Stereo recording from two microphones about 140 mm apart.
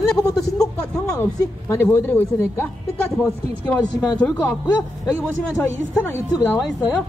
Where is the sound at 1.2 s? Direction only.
15° left (ahead or behind).